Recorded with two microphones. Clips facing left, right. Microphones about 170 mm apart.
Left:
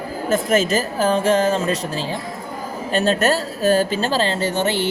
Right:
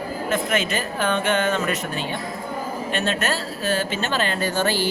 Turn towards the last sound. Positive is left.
turn(degrees=20)  # may be behind; listen again after turning